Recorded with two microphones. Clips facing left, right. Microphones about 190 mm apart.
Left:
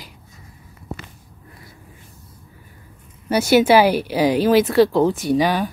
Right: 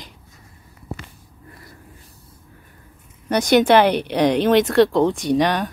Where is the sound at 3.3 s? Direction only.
5° left (ahead or behind).